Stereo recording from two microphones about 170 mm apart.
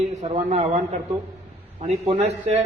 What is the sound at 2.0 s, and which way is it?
Speech, 40° right (ahead or behind).